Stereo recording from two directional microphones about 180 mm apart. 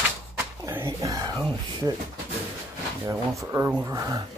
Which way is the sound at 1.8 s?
20° right (ahead or behind).